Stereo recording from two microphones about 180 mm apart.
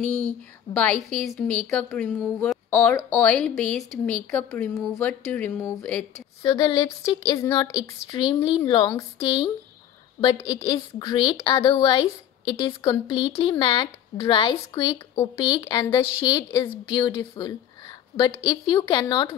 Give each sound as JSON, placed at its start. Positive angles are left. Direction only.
{"t": 0.7, "sound": "speech", "side_deg": 30}
{"t": 1.2, "sound": "a woman's voice", "side_deg": 5}
{"t": 6.5, "sound": "speech", "side_deg": 25}